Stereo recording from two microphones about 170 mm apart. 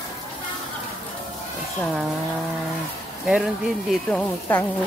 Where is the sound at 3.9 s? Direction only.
5° left (ahead or behind).